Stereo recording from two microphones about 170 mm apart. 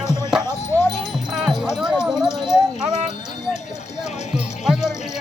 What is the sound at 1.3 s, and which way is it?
Wind chime, 5° right (ahead or behind).